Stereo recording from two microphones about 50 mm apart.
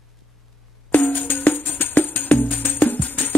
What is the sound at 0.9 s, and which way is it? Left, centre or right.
Music, left.